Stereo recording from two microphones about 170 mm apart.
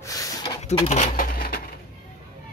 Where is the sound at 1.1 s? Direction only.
55° left (ahead or behind).